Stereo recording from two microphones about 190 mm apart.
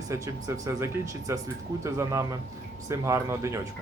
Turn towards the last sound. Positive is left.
turn(degrees=-15)  # may be behind; listen again after turning